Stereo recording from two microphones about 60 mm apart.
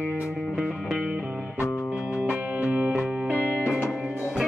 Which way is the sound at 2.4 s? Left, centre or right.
Right.